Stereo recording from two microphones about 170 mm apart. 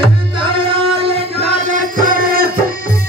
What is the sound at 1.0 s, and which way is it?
Music, 45° right (ahead or behind).